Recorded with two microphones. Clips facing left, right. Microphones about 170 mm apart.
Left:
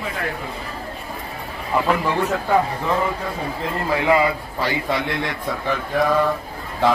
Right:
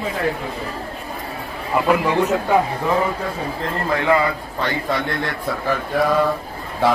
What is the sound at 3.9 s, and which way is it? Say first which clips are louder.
Speech: even; 10° left (ahead or behind).